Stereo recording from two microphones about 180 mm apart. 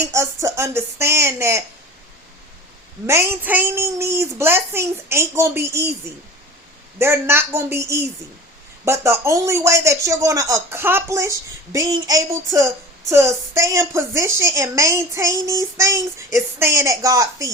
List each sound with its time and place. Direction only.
0.0 s speech: 15° right (ahead or behind)
3.1 s speech: 15° right (ahead or behind)
7.0 s speech: 15° right (ahead or behind)